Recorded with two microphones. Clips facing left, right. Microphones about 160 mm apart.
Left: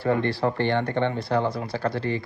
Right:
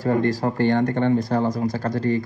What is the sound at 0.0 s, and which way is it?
Speech, 40° right (ahead or behind).